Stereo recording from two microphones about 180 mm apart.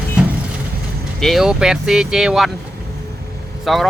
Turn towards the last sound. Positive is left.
turn(degrees=0)  # may be behind; listen again after turning